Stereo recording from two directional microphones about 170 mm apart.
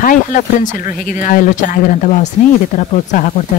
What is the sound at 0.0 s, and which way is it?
Speech, 50° left (ahead or behind).